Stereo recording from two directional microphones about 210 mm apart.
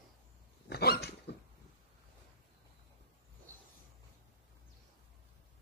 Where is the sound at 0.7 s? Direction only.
50° left (ahead or behind).